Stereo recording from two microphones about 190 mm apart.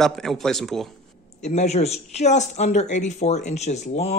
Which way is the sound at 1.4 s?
35° left (ahead or behind).